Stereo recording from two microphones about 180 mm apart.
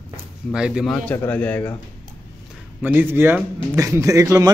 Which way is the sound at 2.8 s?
10° right (ahead or behind).